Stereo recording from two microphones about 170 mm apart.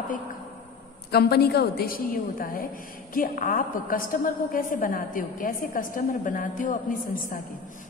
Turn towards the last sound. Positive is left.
turn(degrees=50)  # may be behind; listen again after turning